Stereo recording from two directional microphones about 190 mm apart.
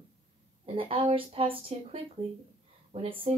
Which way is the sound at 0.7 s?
30° right (ahead or behind).